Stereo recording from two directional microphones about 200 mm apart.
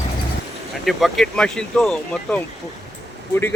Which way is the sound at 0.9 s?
Centre (ahead or behind).